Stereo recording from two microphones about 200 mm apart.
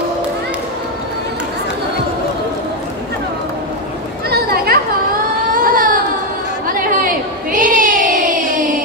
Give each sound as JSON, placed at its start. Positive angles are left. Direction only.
{"t": 4.3, "sound": "children playing", "side_deg": -50}
{"t": 5.5, "sound": "baby cry", "side_deg": -45}
{"t": 7.5, "sound": "child singing", "side_deg": -40}